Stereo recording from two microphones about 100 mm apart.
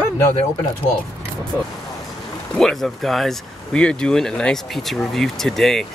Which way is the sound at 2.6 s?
Centre (ahead or behind).